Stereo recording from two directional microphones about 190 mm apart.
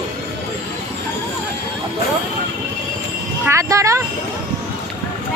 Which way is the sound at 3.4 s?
15° right (ahead or behind).